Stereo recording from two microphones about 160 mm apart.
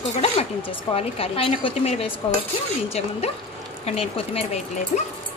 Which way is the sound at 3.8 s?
40° left (ahead or behind).